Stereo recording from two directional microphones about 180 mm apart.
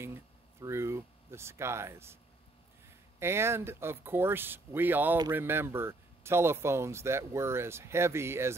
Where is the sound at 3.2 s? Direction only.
15° right (ahead or behind).